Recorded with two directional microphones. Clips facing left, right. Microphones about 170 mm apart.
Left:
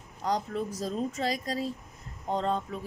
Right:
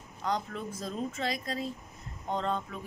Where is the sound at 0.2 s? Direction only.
35° left (ahead or behind).